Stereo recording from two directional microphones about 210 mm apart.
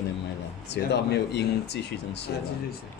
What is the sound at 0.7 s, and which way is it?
Speech, 55° left (ahead or behind).